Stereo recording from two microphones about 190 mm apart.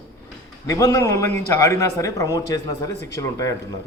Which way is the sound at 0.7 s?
15° left (ahead or behind).